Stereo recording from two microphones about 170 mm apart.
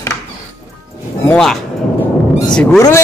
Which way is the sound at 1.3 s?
Centre (ahead or behind).